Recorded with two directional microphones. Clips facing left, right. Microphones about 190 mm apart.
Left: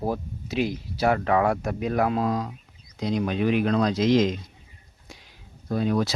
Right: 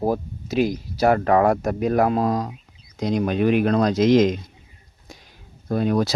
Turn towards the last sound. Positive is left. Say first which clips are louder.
# right 3 dB
turn(degrees=-55)  # may be behind; listen again after turning